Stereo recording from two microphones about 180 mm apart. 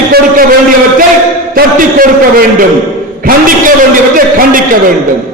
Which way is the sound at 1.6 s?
55° right (ahead or behind).